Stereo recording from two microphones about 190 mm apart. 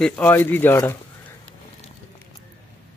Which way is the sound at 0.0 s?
10° left (ahead or behind).